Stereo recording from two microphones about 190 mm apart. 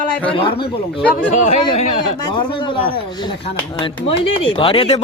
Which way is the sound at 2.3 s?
25° left (ahead or behind).